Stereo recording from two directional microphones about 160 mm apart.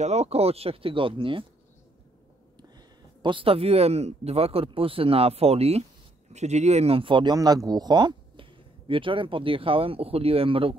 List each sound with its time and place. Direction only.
0.0 s speech: 40° right (ahead or behind)
3.2 s speech: 30° right (ahead or behind)